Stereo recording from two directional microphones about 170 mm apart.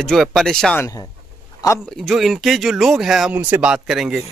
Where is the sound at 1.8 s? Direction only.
Centre (ahead or behind).